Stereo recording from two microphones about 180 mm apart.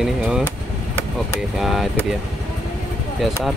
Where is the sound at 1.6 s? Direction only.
Centre (ahead or behind).